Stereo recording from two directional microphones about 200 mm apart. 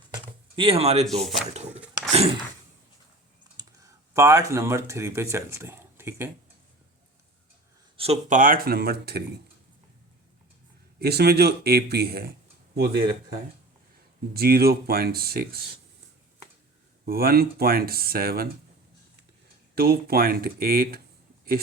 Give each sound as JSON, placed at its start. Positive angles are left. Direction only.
{"t": 0.1, "sound": "a sound", "side_deg": -25}
{"t": 1.2, "sound": "speech", "side_deg": 0}
{"t": 1.7, "sound": "a sound", "side_deg": -5}
{"t": 3.6, "sound": "speech", "side_deg": -15}
{"t": 7.9, "sound": "speech", "side_deg": -30}
{"t": 11.0, "sound": "speech", "side_deg": -50}
{"t": 14.3, "sound": "speech", "side_deg": -50}
{"t": 17.1, "sound": "speech", "side_deg": -50}
{"t": 19.7, "sound": "speech", "side_deg": -50}